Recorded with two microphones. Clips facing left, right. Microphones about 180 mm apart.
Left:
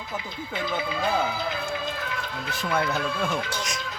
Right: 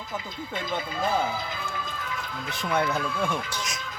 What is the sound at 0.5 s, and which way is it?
Speech, 70° left (ahead or behind).